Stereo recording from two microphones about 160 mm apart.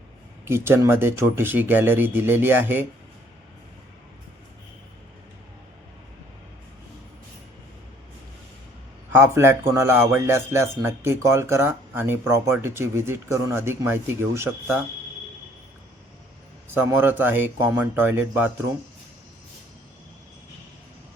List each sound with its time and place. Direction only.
0.4 s a man's voice: 15° right (ahead or behind)
9.1 s a man's voice: 15° right (ahead or behind)
16.6 s a man's voice: 15° right (ahead or behind)